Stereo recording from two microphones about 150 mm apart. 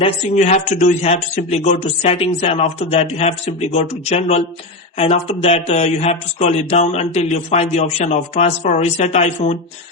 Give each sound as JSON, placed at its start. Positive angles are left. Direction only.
{"t": 0.0, "sound": "speech", "side_deg": 50}